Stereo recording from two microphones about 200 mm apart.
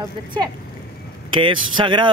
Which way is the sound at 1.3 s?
25° right (ahead or behind).